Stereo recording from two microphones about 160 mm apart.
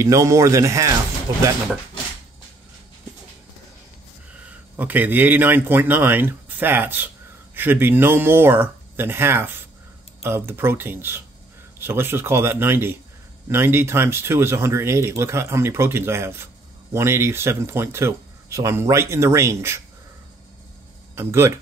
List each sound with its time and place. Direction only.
0.0 s speech: 20° right (ahead or behind)
4.5 s speech: 10° right (ahead or behind)
21.1 s speech: 15° right (ahead or behind)